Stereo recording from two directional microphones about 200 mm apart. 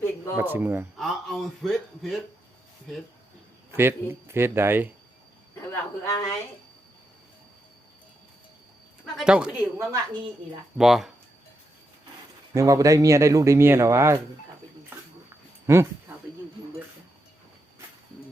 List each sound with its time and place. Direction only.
0.3 s a man's voice: 10° right (ahead or behind)
3.7 s speech: 10° right (ahead or behind)
5.7 s speech: 15° left (ahead or behind)
9.1 s speech: 5° right (ahead or behind)
10.8 s a man's voice: centre (ahead or behind)
12.5 s speech: 15° right (ahead or behind)
15.6 s speech: 15° right (ahead or behind)